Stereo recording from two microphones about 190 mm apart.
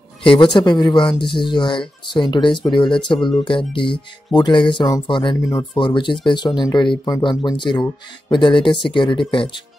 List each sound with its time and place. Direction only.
0.2 s speech: 25° left (ahead or behind)